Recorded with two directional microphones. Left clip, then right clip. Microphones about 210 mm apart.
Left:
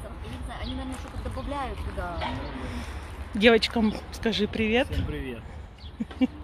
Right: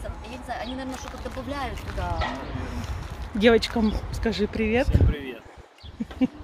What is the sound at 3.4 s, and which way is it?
Speech, 5° right (ahead or behind).